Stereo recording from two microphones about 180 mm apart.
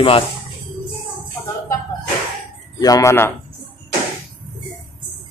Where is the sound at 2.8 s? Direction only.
20° left (ahead or behind).